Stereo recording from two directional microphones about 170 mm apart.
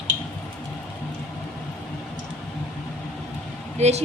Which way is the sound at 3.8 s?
40° right (ahead or behind).